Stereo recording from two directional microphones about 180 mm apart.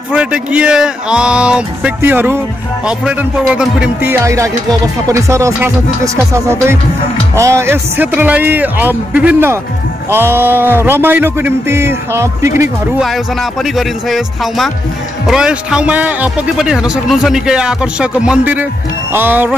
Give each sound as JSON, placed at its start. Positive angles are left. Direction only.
{"t": 0.1, "sound": "speech", "side_deg": -5}
{"t": 13.0, "sound": "speech", "side_deg": 0}